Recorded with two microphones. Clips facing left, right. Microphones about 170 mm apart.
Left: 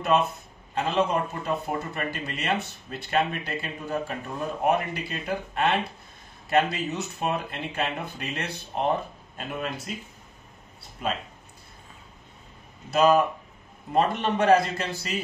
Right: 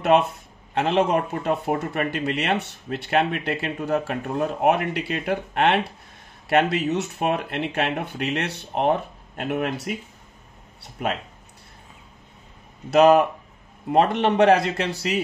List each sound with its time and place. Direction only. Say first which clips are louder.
0.7 s speech: right 4 dB; 70° right (ahead or behind)
12.9 s speech: right 5 dB; 75° right (ahead or behind)